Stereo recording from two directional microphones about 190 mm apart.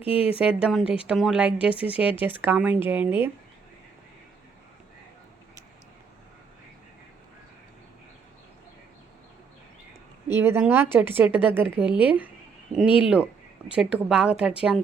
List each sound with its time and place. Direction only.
0.0 s speech: 30° left (ahead or behind)
0.3 s a woman's voice: 5° right (ahead or behind)
10.3 s a woman's voice: 10° right (ahead or behind)